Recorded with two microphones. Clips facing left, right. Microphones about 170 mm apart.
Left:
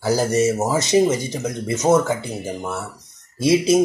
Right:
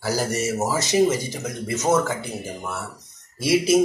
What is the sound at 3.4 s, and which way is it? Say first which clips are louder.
Speech: left 3 dB; 20° left (ahead or behind).